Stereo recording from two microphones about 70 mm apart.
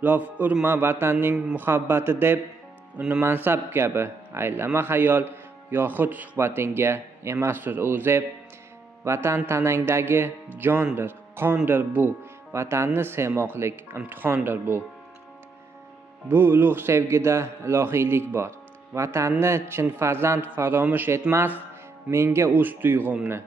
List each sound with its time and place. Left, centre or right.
0.0 s a man's voice: right
0.7 s a man's voice: right
6.3 s speech: right
7.5 s a man's voice: right
12.5 s speech: right
16.3 s speech: right
22.1 s speech: right
22.5 s a man's voice: right